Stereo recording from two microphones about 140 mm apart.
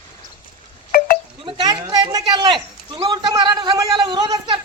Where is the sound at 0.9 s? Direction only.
90° left.